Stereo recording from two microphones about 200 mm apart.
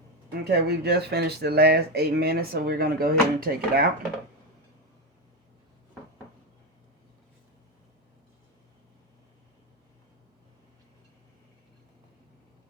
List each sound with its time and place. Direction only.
0.3 s speech: 55° right (ahead or behind)